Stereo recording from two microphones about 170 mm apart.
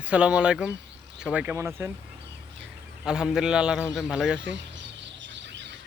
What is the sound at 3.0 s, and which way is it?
A man's voice, 5° right (ahead or behind).